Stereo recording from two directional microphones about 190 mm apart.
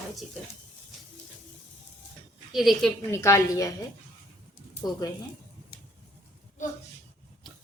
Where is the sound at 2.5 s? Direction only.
Centre (ahead or behind).